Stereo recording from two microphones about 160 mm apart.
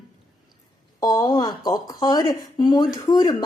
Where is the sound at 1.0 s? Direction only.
25° left (ahead or behind).